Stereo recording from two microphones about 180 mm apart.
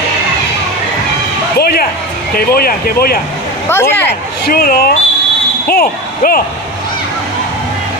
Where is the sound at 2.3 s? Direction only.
55° left (ahead or behind).